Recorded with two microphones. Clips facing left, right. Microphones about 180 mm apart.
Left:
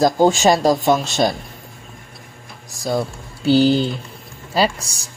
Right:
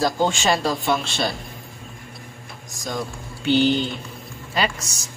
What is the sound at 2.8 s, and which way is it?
Speech, 35° left (ahead or behind).